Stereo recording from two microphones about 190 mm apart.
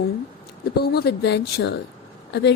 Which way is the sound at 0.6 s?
55° left (ahead or behind).